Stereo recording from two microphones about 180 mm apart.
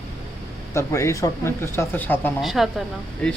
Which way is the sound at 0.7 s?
15° left (ahead or behind).